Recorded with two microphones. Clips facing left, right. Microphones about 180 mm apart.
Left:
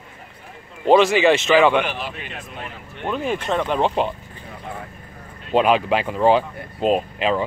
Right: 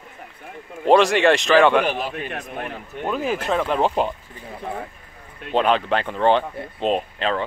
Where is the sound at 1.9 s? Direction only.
45° right (ahead or behind).